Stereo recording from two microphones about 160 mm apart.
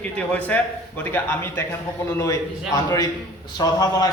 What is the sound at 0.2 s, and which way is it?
A man's voice, 10° left (ahead or behind).